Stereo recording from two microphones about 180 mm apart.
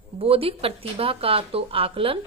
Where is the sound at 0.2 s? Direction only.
30° right (ahead or behind).